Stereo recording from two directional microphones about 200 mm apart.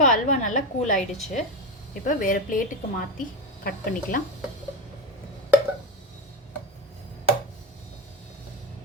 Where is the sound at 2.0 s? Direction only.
45° left (ahead or behind).